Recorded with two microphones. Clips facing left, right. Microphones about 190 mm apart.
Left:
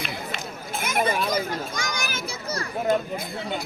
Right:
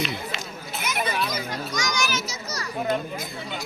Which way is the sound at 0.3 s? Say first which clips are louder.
Left 1 dB; 50° left (ahead or behind).